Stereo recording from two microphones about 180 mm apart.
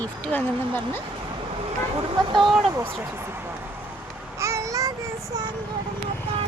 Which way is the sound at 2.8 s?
15° right (ahead or behind).